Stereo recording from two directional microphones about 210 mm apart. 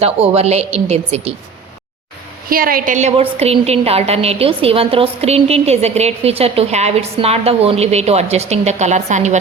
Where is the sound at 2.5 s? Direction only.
45° right (ahead or behind).